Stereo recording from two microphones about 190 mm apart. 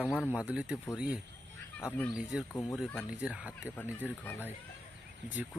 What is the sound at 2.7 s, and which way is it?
Speech, centre (ahead or behind).